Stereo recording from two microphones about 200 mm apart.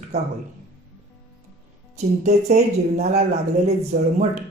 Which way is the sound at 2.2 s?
35° right (ahead or behind).